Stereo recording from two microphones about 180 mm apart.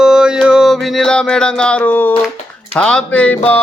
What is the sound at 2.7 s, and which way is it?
Music, 5° left (ahead or behind).